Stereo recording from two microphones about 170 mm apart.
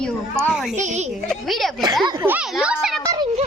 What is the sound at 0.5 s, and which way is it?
Speech, centre (ahead or behind).